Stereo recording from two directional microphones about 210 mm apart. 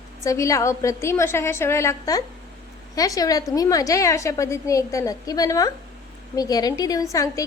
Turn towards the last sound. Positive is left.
turn(degrees=15)  # may be behind; listen again after turning